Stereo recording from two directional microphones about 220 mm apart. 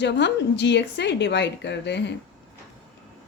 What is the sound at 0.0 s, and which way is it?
A woman's voice, 50° left (ahead or behind).